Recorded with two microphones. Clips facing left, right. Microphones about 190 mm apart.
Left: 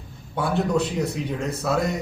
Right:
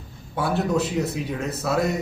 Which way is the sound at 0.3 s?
5° right (ahead or behind).